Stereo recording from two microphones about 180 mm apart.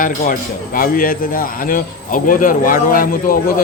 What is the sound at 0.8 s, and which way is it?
Speech, 50° left (ahead or behind).